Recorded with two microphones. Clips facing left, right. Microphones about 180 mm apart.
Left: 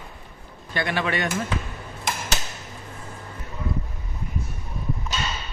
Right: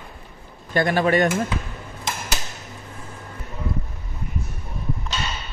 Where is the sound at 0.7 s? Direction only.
45° right (ahead or behind).